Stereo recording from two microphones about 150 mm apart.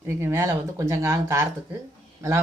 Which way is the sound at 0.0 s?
15° right (ahead or behind).